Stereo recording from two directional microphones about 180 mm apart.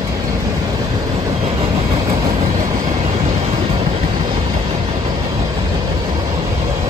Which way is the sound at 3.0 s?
35° right (ahead or behind).